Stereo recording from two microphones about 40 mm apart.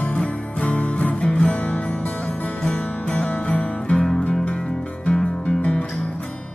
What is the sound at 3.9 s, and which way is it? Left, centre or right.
Music, centre.